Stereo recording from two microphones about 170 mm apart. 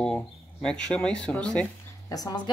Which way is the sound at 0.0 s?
5° left (ahead or behind).